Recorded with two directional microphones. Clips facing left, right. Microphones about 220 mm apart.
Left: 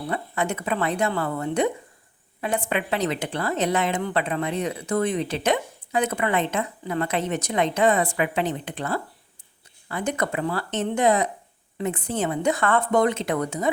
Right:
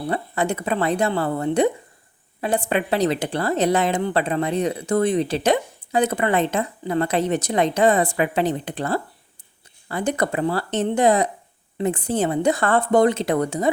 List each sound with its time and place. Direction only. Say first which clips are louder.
0.1 s a woman's voice: right 3 dB; 35° right (ahead or behind)